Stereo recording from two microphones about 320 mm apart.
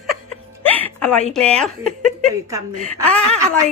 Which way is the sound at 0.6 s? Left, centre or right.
Centre.